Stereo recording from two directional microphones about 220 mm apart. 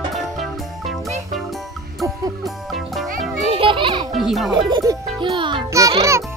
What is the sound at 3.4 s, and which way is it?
Music, 25° right (ahead or behind).